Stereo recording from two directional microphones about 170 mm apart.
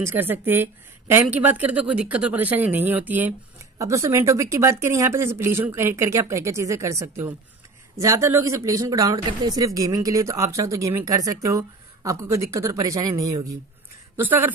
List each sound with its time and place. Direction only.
0.0 s a woman's voice: 10° right (ahead or behind)